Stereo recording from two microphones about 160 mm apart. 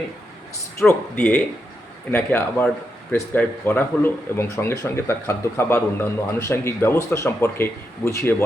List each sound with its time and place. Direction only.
0.8 s speech: 15° left (ahead or behind)